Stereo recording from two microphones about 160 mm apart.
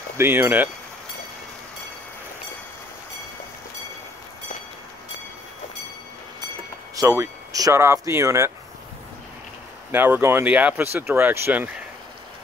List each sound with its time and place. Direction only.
0.2 s speech: 15° right (ahead or behind)
7.0 s speech: 20° right (ahead or behind)
9.8 s speech: 10° right (ahead or behind)